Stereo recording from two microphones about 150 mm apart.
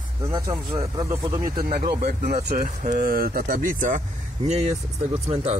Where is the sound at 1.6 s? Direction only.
75° right (ahead or behind).